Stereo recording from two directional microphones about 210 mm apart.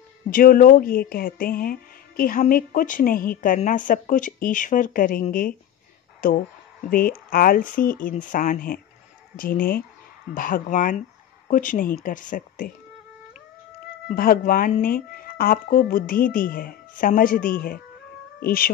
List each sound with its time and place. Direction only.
0.3 s speech: 40° left (ahead or behind)
14.0 s speech: 45° left (ahead or behind)